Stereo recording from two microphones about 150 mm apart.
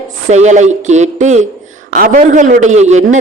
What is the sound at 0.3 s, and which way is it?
A woman's voice, 50° right (ahead or behind).